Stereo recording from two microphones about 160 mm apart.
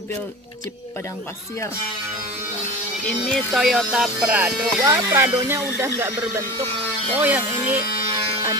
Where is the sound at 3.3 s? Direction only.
Centre (ahead or behind).